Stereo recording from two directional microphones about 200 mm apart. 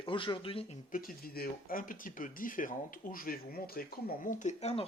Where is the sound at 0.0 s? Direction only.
25° left (ahead or behind).